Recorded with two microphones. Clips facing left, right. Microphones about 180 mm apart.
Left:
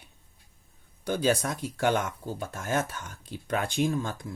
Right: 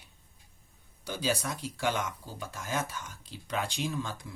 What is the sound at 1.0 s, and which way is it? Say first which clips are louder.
Speech: left 6 dB; 55° left (ahead or behind).